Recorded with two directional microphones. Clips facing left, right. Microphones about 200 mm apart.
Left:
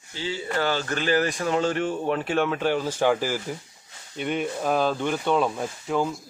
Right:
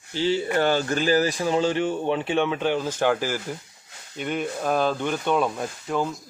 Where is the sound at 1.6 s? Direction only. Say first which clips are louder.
Right 2 dB; centre (ahead or behind).